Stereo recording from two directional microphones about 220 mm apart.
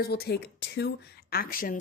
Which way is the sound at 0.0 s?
45° left (ahead or behind).